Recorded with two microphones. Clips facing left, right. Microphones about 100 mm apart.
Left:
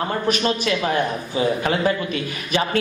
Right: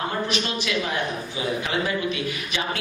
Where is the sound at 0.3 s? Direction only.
45° left (ahead or behind).